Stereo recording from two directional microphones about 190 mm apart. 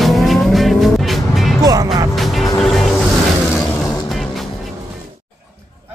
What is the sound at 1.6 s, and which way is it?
Music, 20° right (ahead or behind).